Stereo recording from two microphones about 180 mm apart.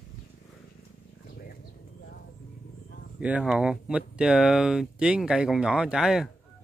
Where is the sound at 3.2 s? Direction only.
5° right (ahead or behind).